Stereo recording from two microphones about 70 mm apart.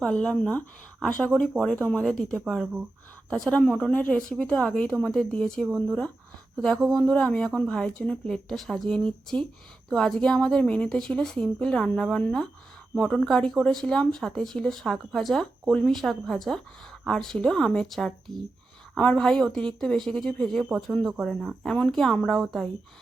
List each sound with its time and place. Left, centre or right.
0.0 s speech: centre
3.8 s speech: centre
7.0 s speech: centre
7.3 s speech: centre
8.4 s speech: centre